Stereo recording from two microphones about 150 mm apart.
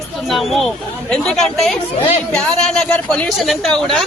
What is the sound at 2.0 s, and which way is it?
Speech, 40° left (ahead or behind).